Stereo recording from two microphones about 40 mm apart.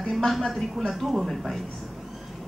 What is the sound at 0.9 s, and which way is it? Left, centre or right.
Speech, centre.